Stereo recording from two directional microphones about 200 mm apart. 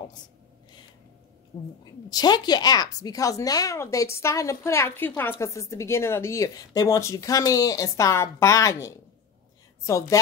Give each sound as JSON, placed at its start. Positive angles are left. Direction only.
{"t": 1.5, "sound": "speech", "side_deg": 15}